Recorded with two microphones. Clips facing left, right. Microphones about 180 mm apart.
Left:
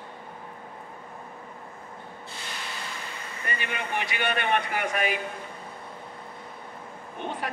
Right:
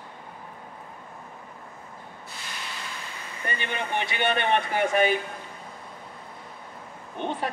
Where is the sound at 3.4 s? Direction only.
30° right (ahead or behind).